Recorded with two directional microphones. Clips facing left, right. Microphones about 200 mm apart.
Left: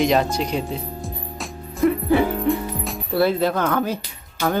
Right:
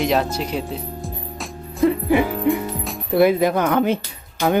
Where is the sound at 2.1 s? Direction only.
15° right (ahead or behind).